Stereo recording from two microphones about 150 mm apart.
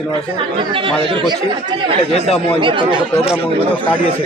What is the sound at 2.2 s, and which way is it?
Speech, 45° left (ahead or behind).